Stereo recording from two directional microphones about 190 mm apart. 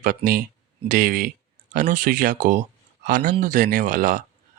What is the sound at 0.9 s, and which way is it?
Speech, 45° right (ahead or behind).